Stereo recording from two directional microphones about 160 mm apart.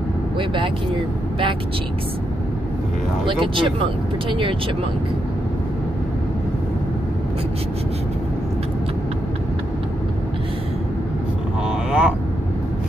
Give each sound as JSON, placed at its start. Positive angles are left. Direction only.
{"t": 4.3, "sound": "speech", "side_deg": -30}
{"t": 11.6, "sound": "speech", "side_deg": -5}